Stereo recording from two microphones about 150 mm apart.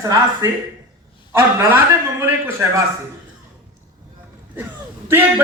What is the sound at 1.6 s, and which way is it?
Speech, 15° right (ahead or behind).